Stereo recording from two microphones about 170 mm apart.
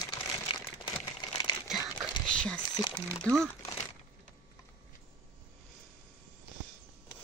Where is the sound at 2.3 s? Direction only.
5° left (ahead or behind).